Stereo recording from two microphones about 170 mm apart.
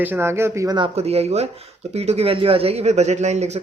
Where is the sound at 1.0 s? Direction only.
40° right (ahead or behind).